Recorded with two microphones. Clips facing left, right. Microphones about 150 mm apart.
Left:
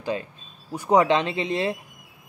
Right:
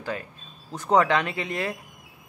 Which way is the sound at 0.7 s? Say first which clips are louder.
Left 2 dB; 15° left (ahead or behind).